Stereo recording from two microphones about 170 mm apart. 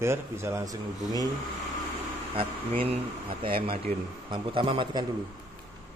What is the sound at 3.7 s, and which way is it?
Speech, 30° right (ahead or behind).